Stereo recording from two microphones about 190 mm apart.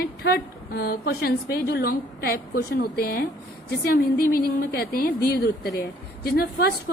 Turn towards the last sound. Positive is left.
turn(degrees=50)  # may be behind; listen again after turning